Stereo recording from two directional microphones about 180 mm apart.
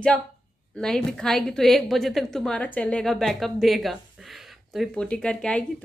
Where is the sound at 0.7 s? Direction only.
5° left (ahead or behind).